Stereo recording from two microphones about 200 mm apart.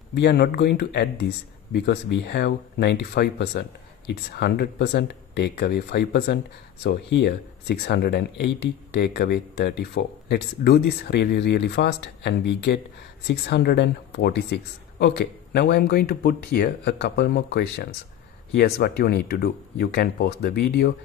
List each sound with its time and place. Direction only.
0.1 s speech: 55° left (ahead or behind)